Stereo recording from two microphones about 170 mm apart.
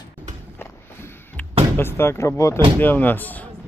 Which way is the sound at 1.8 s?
15° left (ahead or behind).